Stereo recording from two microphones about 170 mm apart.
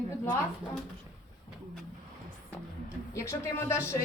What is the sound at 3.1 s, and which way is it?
Speech, 15° left (ahead or behind).